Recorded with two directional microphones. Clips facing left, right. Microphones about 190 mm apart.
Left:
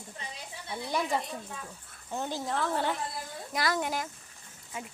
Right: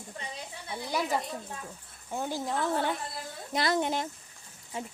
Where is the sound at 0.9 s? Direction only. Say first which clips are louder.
Even; 5° right (ahead or behind).